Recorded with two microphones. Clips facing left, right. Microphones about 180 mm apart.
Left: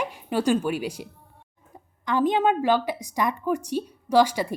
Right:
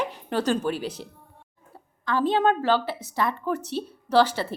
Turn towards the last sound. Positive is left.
turn(degrees=10)  # may be behind; listen again after turning